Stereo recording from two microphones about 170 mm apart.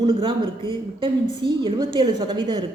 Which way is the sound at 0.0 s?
30° right (ahead or behind).